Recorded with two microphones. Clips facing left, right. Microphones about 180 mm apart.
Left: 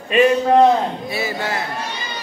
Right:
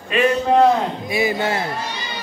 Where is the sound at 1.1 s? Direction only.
15° right (ahead or behind).